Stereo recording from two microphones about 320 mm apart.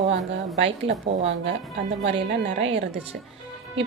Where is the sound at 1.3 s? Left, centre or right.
Right.